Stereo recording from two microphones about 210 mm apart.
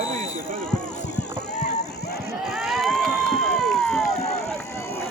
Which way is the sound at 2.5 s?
Centre (ahead or behind).